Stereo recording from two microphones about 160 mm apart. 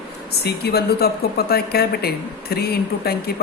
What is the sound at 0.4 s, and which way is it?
A woman's voice, 85° left.